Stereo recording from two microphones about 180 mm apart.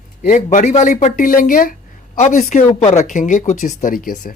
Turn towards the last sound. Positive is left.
turn(degrees=50)  # may be behind; listen again after turning